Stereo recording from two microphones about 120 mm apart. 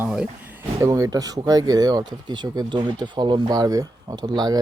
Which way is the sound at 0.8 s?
25° right (ahead or behind).